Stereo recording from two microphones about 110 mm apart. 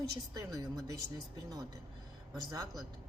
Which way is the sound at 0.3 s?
35° right (ahead or behind).